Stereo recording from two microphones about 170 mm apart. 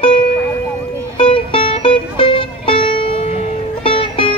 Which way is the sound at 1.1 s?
30° left (ahead or behind).